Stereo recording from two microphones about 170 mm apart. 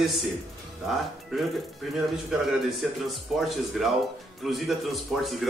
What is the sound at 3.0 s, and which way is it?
A man's voice, centre (ahead or behind).